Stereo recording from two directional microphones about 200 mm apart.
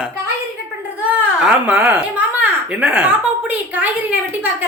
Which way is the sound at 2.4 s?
5° right (ahead or behind).